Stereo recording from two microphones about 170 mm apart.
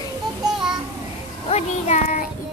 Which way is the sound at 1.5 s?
40° left (ahead or behind).